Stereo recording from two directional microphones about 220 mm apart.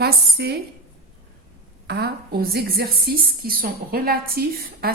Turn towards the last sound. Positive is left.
turn(degrees=-45)  # may be behind; listen again after turning